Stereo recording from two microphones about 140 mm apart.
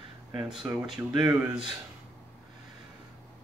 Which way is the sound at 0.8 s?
5° right (ahead or behind).